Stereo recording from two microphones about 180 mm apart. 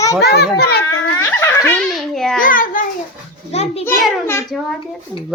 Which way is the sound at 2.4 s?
50° left (ahead or behind).